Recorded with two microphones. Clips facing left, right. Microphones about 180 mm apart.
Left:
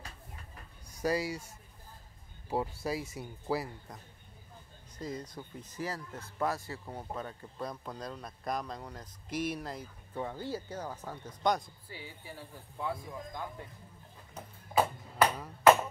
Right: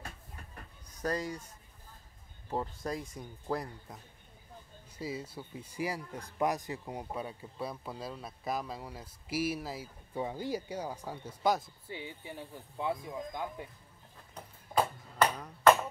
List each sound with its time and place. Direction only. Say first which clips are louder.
0.8 s speech: left 3 dB; 10° left (ahead or behind)
2.5 s speech: left 2 dB; 10° left (ahead or behind)
4.9 s speech: right 1 dB; 5° right (ahead or behind)
11.9 s speech: right 4 dB; 20° right (ahead or behind)
14.3 s ping: left 1 dB; 5° left (ahead or behind)